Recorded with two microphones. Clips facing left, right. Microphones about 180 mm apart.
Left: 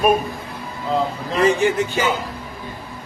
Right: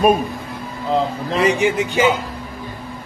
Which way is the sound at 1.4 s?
15° right (ahead or behind).